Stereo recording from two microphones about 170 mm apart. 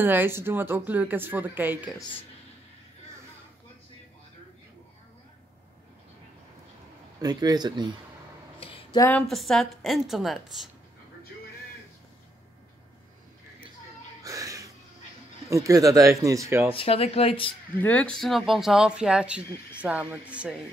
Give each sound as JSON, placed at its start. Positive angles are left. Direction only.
{"t": 0.0, "sound": "speech", "side_deg": -10}
{"t": 7.2, "sound": "speech", "side_deg": -20}
{"t": 8.5, "sound": "a sound", "side_deg": 30}
{"t": 8.9, "sound": "a woman's voice", "side_deg": 15}
{"t": 9.3, "sound": "speech", "side_deg": 0}
{"t": 14.2, "sound": "music", "side_deg": -20}
{"t": 15.5, "sound": "speech", "side_deg": -20}
{"t": 16.7, "sound": "speech", "side_deg": 35}
{"t": 17.7, "sound": "speech", "side_deg": 10}